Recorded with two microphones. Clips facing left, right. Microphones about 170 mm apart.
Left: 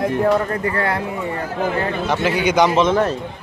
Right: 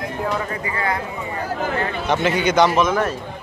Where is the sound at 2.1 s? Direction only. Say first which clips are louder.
Right 1 dB; 5° left (ahead or behind).